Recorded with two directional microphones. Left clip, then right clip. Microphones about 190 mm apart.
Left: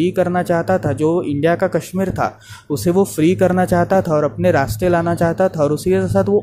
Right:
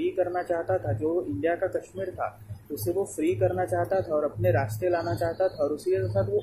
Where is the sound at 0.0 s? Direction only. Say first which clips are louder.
Left 10 dB; 45° left (ahead or behind).